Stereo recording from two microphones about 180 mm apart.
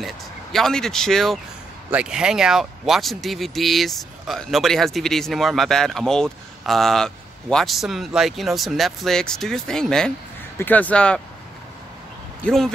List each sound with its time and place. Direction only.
0.0 s speech: centre (ahead or behind)
12.4 s speech: 5° left (ahead or behind)